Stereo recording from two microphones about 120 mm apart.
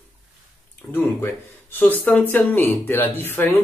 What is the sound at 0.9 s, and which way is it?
Speech, 15° left (ahead or behind).